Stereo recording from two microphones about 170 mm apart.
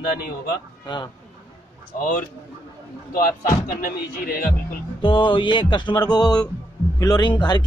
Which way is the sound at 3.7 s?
55° left (ahead or behind).